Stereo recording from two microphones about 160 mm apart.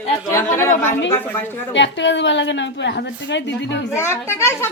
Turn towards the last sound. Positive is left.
turn(degrees=15)  # may be behind; listen again after turning